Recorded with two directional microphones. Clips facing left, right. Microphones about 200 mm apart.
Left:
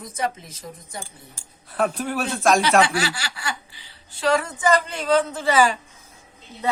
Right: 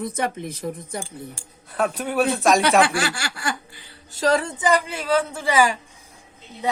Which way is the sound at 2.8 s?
50° right (ahead or behind).